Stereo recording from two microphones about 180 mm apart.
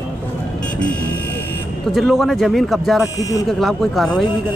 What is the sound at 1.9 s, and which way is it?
Speech, centre (ahead or behind).